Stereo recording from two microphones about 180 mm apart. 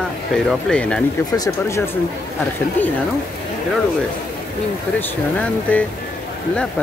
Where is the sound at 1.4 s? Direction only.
15° left (ahead or behind).